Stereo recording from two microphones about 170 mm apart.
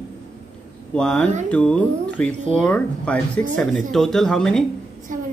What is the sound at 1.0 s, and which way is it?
Speech, 5° left (ahead or behind).